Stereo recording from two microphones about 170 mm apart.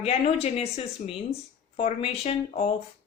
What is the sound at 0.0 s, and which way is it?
Speech, 35° left (ahead or behind).